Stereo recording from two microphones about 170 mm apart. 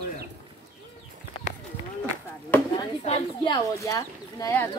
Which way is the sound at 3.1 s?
25° left (ahead or behind).